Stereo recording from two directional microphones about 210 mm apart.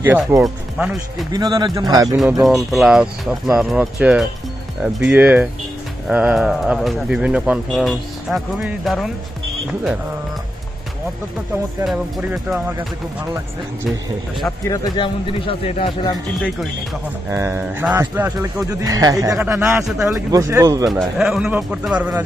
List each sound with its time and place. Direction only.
0.0 s speech: 10° right (ahead or behind)
1.3 s speech: 20° right (ahead or behind)
2.4 s speech: centre (ahead or behind)
11.8 s speech: 5° right (ahead or behind)
14.7 s speech: 25° left (ahead or behind)
17.3 s speech: 10° right (ahead or behind)
20.2 s speech: 15° right (ahead or behind)
20.9 s speech: centre (ahead or behind)